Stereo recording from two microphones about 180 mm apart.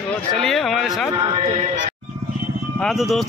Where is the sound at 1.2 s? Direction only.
35° right (ahead or behind).